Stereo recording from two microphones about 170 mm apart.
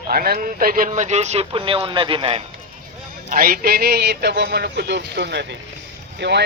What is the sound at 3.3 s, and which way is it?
Speech, 60° right (ahead or behind).